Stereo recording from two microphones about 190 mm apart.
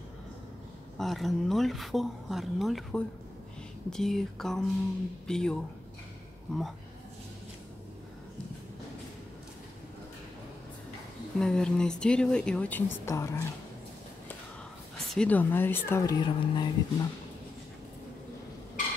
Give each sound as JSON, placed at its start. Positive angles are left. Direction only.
{"t": 0.9, "sound": "speech", "side_deg": 0}
{"t": 11.3, "sound": "speech", "side_deg": 5}
{"t": 15.1, "sound": "speech", "side_deg": 10}
{"t": 16.2, "sound": "speech", "side_deg": 25}